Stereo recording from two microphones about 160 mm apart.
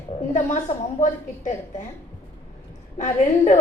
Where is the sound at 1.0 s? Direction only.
50° left (ahead or behind).